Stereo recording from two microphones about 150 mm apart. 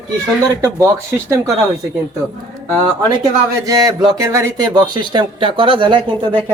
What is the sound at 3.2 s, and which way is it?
Speech, 25° right (ahead or behind).